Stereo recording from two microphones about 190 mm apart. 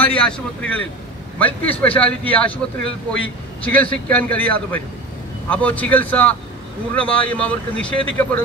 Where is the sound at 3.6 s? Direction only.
10° left (ahead or behind).